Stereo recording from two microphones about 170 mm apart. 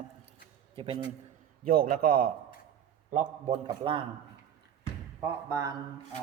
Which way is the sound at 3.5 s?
30° right (ahead or behind).